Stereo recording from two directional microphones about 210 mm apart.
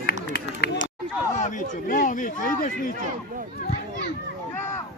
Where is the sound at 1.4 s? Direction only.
40° left (ahead or behind).